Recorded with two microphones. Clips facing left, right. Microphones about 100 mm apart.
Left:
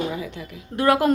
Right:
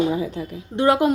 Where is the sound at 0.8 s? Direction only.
20° right (ahead or behind).